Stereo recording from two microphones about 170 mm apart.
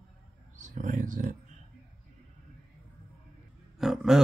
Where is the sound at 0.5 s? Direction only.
45° right (ahead or behind).